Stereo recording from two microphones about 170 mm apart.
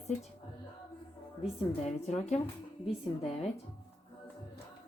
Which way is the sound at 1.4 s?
40° left (ahead or behind).